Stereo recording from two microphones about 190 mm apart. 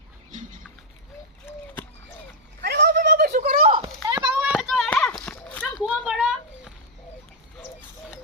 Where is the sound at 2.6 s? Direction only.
60° right (ahead or behind).